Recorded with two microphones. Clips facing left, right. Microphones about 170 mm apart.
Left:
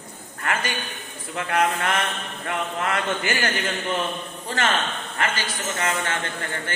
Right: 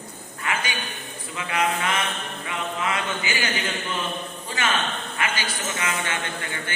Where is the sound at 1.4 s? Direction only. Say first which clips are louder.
Left 2 dB; 55° left (ahead or behind).